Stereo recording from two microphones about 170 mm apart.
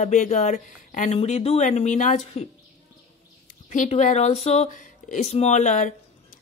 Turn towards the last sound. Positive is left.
turn(degrees=45)  # may be behind; listen again after turning